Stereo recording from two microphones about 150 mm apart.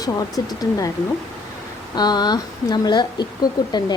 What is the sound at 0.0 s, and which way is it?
Speech, 25° left (ahead or behind).